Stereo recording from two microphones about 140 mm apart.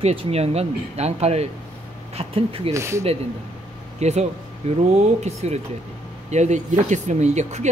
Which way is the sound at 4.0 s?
50° right (ahead or behind).